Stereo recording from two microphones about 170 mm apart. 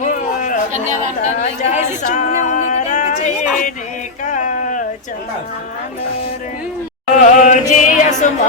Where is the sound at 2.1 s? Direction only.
45° left (ahead or behind).